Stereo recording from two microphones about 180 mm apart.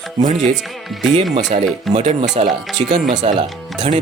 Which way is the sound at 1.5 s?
35° right (ahead or behind).